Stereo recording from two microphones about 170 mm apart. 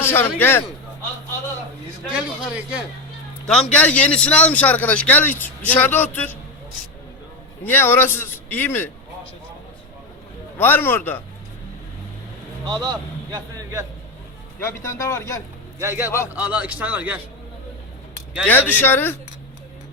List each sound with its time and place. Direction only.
0.0 s a man's voice: 15° left (ahead or behind)
2.0 s a man's voice: 5° right (ahead or behind)
3.4 s a man's voice: 5° left (ahead or behind)
7.6 s a man's voice: 10° left (ahead or behind)
10.6 s a man's voice: 10° left (ahead or behind)
12.6 s a man's voice: 25° right (ahead or behind)
14.6 s a man's voice: 15° left (ahead or behind)
15.8 s speech: 15° right (ahead or behind)
18.4 s a man's voice: 10° left (ahead or behind)